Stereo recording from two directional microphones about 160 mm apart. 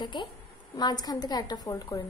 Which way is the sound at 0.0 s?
30° left (ahead or behind).